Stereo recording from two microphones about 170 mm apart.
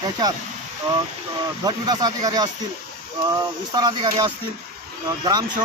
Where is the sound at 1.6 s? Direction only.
25° right (ahead or behind).